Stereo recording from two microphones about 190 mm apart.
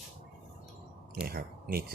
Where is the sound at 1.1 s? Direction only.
55° right (ahead or behind).